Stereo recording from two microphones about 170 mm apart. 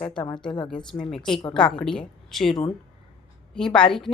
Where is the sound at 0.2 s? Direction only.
30° left (ahead or behind).